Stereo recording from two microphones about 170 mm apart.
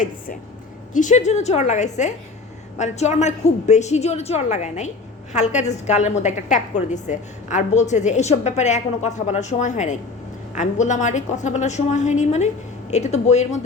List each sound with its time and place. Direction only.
0.9 s a woman's voice: 45° left (ahead or behind)